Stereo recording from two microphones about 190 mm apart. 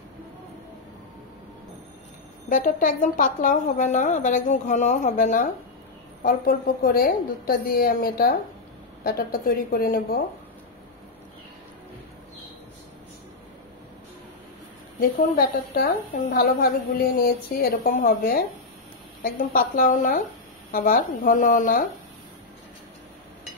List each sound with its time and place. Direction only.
2.5 s a woman's voice: 45° left (ahead or behind)
15.0 s a woman's voice: 50° left (ahead or behind)